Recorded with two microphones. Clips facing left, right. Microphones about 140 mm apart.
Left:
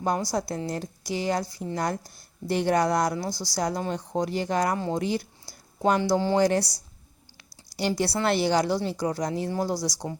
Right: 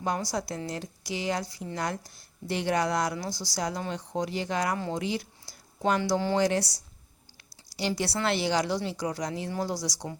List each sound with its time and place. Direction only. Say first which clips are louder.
0.0 s speech: left 4 dB; 35° left (ahead or behind)
7.8 s speech: left 3 dB; 45° left (ahead or behind)